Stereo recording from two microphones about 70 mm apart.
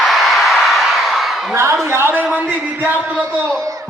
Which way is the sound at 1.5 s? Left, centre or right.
Right.